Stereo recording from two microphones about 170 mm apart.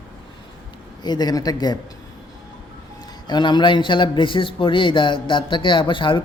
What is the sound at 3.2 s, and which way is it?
A man's voice, 25° left (ahead or behind).